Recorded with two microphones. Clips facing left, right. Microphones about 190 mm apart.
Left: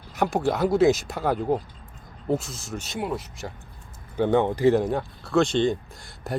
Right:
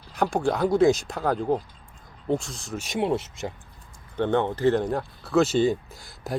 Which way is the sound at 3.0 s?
25° right (ahead or behind).